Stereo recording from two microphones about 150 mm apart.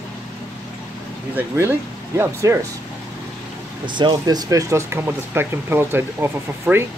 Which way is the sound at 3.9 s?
30° right (ahead or behind).